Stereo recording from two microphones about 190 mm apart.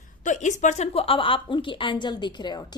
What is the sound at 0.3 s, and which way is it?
A woman's voice, 40° left (ahead or behind).